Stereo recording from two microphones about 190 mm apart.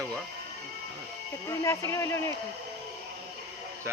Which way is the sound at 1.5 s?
15° left (ahead or behind).